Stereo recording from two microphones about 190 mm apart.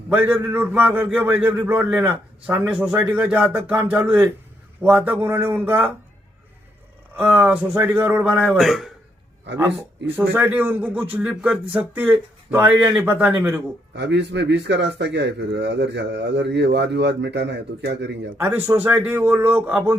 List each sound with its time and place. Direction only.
0.1 s a man's voice: 5° right (ahead or behind)
7.2 s a man's voice: 10° right (ahead or behind)
12.7 s a man's voice: 20° right (ahead or behind)
13.0 s a man's voice: 10° right (ahead or behind)
13.9 s speech: 65° right (ahead or behind)
18.3 s a man's voice: 10° right (ahead or behind)